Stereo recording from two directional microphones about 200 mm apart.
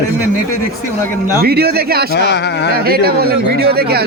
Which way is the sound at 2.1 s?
60° left (ahead or behind).